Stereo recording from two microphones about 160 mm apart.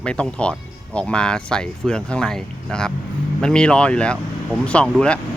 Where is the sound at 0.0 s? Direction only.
5° left (ahead or behind).